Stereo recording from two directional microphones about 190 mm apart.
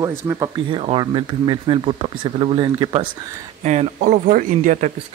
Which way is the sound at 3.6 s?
40° right (ahead or behind).